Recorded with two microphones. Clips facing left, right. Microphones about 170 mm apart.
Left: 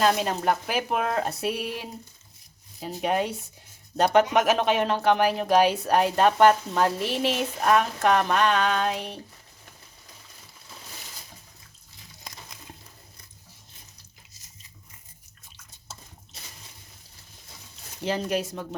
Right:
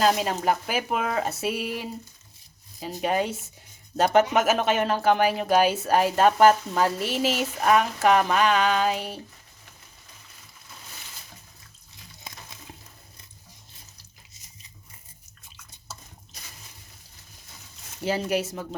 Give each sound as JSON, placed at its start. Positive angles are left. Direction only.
{"t": 0.0, "sound": "speech", "side_deg": 0}
{"t": 18.0, "sound": "speech", "side_deg": -5}